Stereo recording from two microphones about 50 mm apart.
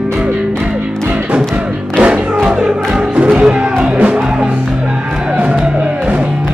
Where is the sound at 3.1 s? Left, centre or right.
Right.